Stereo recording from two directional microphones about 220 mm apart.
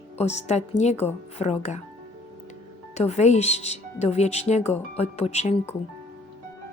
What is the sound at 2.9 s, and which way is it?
Speech, 30° left (ahead or behind).